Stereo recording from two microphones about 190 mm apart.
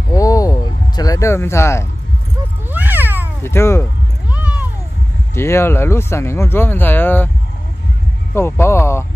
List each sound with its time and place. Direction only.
0.1 s music: 20° left (ahead or behind)
2.7 s cat: 10° right (ahead or behind)
3.4 s speech: 15° left (ahead or behind)
4.3 s cat: 10° right (ahead or behind)
5.3 s speech: 15° left (ahead or behind)
8.4 s speech: 15° left (ahead or behind)